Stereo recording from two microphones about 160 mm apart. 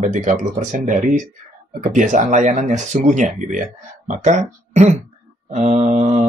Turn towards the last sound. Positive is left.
turn(degrees=-45)  # may be behind; listen again after turning